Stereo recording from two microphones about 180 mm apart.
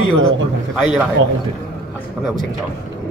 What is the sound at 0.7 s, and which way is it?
Speech, centre (ahead or behind).